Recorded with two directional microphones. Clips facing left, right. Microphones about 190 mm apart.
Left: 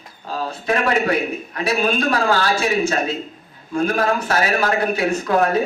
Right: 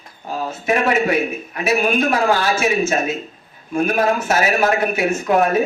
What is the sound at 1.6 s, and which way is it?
A man's voice, 20° right (ahead or behind).